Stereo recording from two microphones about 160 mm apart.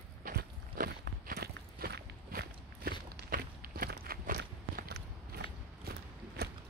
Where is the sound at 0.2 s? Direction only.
65° right (ahead or behind).